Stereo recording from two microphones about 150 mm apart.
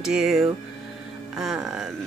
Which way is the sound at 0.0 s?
5° right (ahead or behind).